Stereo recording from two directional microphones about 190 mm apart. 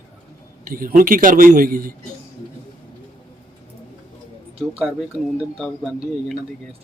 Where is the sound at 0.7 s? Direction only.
45° right (ahead or behind).